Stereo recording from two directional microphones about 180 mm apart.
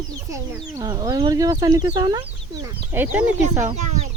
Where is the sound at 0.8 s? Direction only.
20° right (ahead or behind).